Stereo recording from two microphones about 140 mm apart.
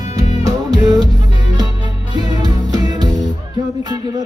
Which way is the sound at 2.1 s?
30° right (ahead or behind).